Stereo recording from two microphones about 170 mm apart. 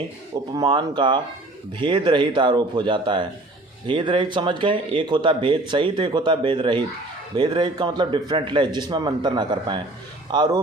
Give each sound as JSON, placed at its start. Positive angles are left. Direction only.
{"t": 0.5, "sound": "speech", "side_deg": -25}